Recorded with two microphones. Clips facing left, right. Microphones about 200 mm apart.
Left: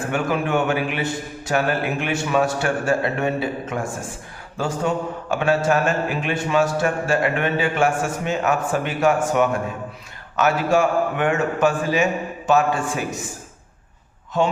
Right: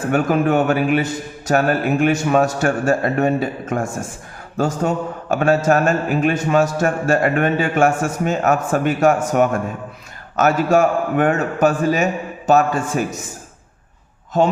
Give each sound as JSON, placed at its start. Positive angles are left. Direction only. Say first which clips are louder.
{"t": 0.1, "sound": "a man's voice", "louder": "right 6 dB", "side_deg": -40}
{"t": 14.3, "sound": "a man's voice", "louder": "right 4 dB", "side_deg": -40}